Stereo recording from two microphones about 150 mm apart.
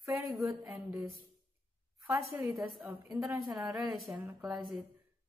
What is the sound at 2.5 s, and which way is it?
Speech, centre (ahead or behind).